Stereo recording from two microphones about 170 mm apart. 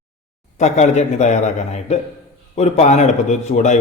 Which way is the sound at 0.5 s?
40° left (ahead or behind).